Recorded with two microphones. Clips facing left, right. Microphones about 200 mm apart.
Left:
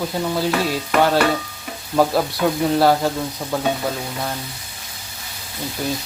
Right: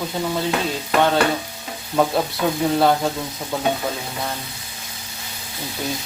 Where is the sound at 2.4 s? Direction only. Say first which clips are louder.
Left 1 dB; 5° left (ahead or behind).